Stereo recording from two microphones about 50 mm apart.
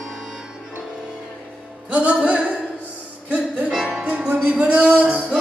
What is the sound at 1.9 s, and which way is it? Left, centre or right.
Music, right.